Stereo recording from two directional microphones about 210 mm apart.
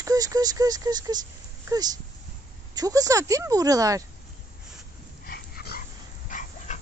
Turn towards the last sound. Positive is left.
turn(degrees=35)  # may be behind; listen again after turning